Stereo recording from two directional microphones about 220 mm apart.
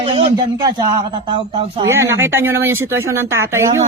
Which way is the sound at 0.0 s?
30° right (ahead or behind).